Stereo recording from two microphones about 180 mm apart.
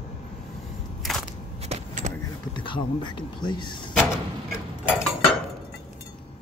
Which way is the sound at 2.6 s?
25° left (ahead or behind).